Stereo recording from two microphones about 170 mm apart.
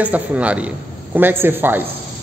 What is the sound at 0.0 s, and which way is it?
A man's voice, 10° right (ahead or behind).